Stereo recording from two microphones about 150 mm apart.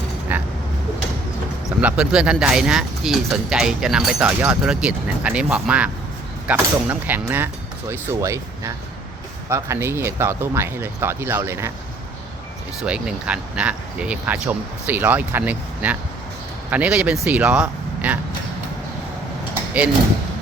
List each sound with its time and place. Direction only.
1.8 s speech: 5° right (ahead or behind)
12.8 s speech: 5° right (ahead or behind)